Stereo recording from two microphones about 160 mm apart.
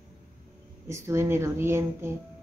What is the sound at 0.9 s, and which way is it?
Speech, 15° right (ahead or behind).